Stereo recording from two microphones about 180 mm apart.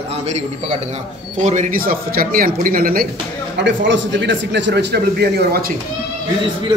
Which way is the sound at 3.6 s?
85° right.